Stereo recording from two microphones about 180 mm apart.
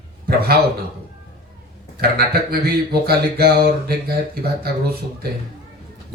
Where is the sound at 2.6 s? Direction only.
60° right (ahead or behind).